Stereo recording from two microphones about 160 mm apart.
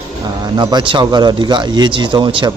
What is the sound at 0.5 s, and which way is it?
Speech, 25° right (ahead or behind).